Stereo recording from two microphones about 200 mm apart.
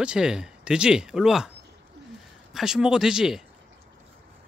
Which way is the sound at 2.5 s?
Centre (ahead or behind).